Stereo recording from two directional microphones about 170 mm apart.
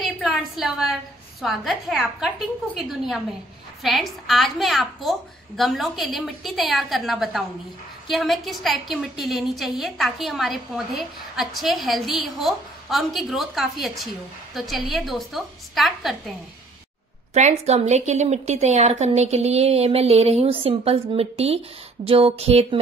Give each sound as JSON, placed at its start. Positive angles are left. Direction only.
{"t": 0.0, "sound": "a sound", "side_deg": 0}
{"t": 1.4, "sound": "a woman's voice", "side_deg": 0}
{"t": 3.8, "sound": "a woman's voice", "side_deg": 0}
{"t": 17.3, "sound": "a woman's voice", "side_deg": -40}